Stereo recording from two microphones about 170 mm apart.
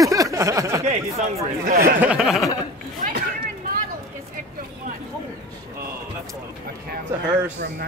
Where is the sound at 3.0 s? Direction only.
55° right (ahead or behind).